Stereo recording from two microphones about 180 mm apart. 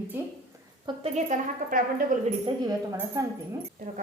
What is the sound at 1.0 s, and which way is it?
A woman's voice, 40° right (ahead or behind).